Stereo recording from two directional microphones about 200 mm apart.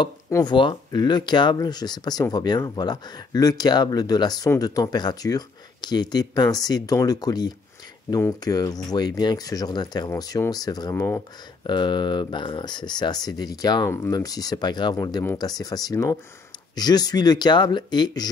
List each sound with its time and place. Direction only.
0.0 s speech: 20° left (ahead or behind)